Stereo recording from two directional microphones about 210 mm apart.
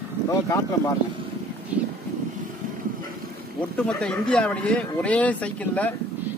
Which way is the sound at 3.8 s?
5° left (ahead or behind).